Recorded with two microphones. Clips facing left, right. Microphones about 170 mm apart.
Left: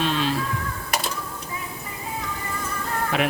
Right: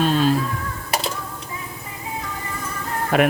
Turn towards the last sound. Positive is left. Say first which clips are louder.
# right 6 dB
turn(degrees=-50)  # may be behind; listen again after turning